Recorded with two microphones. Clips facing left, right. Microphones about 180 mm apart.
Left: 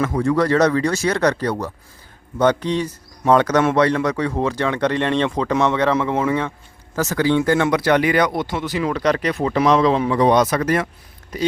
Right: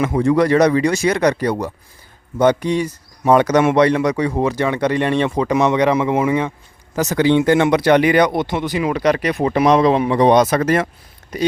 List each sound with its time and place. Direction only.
0.0 s speech: 15° right (ahead or behind)